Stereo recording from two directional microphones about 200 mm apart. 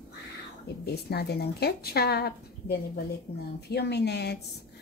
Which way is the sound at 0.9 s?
55° left (ahead or behind).